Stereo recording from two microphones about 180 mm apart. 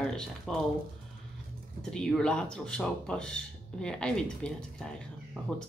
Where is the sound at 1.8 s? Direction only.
5° left (ahead or behind).